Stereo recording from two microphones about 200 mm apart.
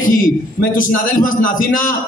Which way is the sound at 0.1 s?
45° left (ahead or behind).